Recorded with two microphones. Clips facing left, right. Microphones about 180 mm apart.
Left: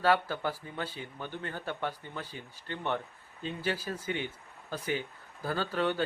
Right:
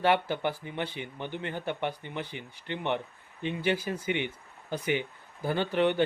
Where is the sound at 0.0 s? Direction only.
20° right (ahead or behind).